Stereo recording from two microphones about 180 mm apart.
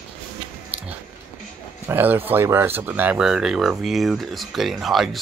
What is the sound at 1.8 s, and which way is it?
Speech, 10° right (ahead or behind).